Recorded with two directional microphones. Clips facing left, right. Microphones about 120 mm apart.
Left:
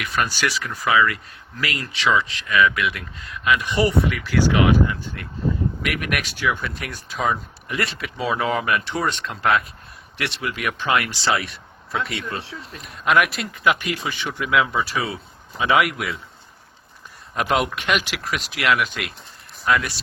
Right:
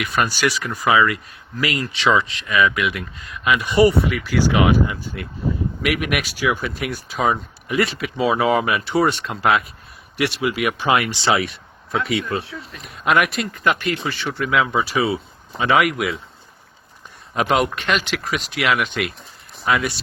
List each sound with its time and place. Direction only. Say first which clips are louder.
0.2 s speech: right 3 dB; 15° right (ahead or behind)
17.3 s speech: right 3 dB; centre (ahead or behind)
17.7 s speech: right 1 dB; 10° left (ahead or behind)